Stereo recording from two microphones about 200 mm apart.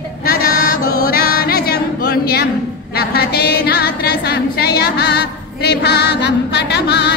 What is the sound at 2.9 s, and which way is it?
Music, 50° left (ahead or behind).